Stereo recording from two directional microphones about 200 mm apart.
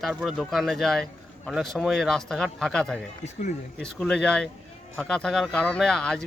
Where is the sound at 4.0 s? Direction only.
5° left (ahead or behind).